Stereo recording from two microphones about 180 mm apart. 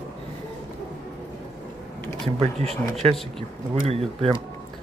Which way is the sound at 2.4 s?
35° right (ahead or behind).